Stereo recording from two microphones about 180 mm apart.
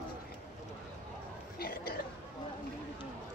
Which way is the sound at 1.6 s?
55° left (ahead or behind).